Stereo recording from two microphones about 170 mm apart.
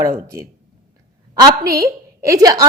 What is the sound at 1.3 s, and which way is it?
A woman's voice, 20° right (ahead or behind).